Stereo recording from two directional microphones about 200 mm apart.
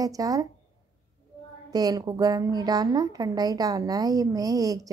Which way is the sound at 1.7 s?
20° right (ahead or behind).